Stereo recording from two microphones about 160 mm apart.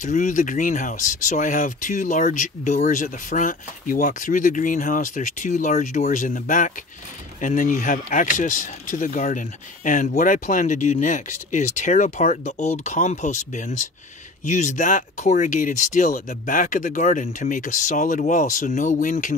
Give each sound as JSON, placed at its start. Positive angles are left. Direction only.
{"t": 0.0, "sound": "speech", "side_deg": 50}